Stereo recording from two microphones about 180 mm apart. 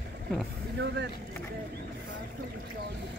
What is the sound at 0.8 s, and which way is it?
Speech, 70° right (ahead or behind).